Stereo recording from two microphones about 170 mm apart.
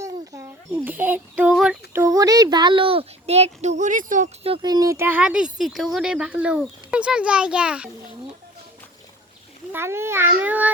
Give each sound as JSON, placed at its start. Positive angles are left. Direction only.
{"t": 0.0, "sound": "child singing", "side_deg": -15}
{"t": 2.0, "sound": "a child's voice", "side_deg": -20}
{"t": 4.4, "sound": "speech", "side_deg": -30}
{"t": 9.7, "sound": "speech", "side_deg": -15}